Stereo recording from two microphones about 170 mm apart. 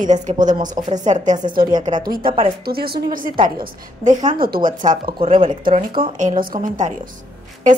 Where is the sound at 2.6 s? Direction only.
65° right (ahead or behind); by 4.2 s 45° right (ahead or behind).